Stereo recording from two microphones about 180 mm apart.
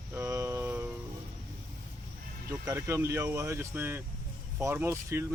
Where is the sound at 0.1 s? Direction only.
15° right (ahead or behind).